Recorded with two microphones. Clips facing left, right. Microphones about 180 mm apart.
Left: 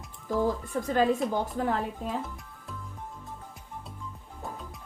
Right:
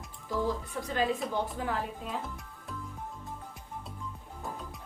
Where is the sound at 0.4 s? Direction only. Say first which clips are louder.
Left 5 dB; 50° left (ahead or behind).